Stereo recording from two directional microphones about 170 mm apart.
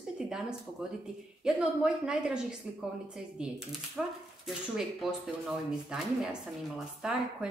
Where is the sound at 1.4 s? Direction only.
5° right (ahead or behind).